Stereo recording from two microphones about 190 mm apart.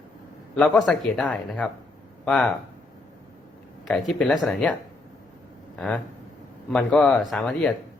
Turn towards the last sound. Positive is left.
turn(degrees=5)  # may be behind; listen again after turning